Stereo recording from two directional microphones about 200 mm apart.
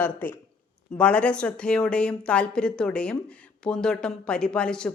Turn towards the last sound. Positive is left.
turn(degrees=5)  # may be behind; listen again after turning